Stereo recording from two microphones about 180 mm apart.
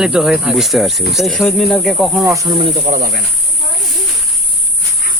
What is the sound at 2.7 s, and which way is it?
Speech, 45° right (ahead or behind).